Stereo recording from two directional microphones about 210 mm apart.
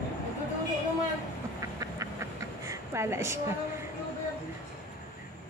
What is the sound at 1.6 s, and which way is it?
Duck, 15° right (ahead or behind).